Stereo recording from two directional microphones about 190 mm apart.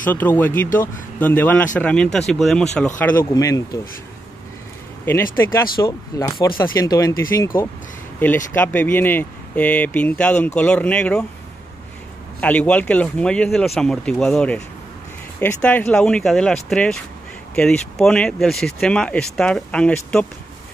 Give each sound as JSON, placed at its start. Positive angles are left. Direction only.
{"t": 0.0, "sound": "speech", "side_deg": 10}
{"t": 5.0, "sound": "speech", "side_deg": 10}
{"t": 12.4, "sound": "speech", "side_deg": 5}